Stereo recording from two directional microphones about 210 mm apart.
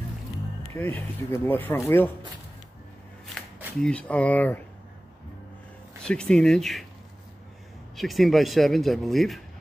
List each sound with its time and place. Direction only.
0.7 s speech: 10° left (ahead or behind)
3.8 s speech: 5° left (ahead or behind)
6.0 s speech: 5° left (ahead or behind)
7.9 s speech: centre (ahead or behind)